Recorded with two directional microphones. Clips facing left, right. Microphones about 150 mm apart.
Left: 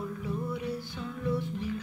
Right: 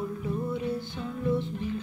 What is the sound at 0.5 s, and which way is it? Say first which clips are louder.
Music: right 4 dB; 25° right (ahead or behind).